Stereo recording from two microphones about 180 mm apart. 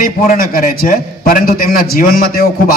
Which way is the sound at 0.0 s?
50° left (ahead or behind).